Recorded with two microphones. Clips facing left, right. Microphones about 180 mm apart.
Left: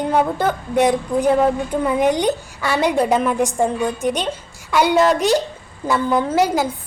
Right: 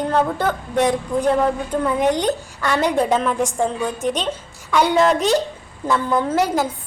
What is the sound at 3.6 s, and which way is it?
Speech, 15° left (ahead or behind).